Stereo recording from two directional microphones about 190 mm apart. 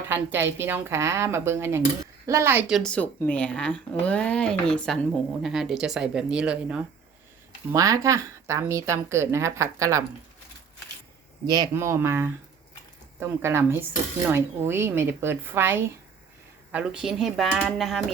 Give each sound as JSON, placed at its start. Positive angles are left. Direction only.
{"t": 0.1, "sound": "a woman's voice", "side_deg": -10}
{"t": 7.7, "sound": "a woman's voice", "side_deg": -15}
{"t": 11.4, "sound": "a woman's voice", "side_deg": -20}